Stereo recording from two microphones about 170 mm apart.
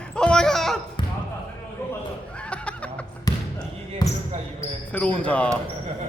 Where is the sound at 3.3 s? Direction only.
20° left (ahead or behind).